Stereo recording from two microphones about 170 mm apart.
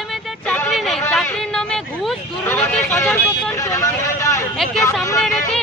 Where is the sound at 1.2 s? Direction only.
5° left (ahead or behind).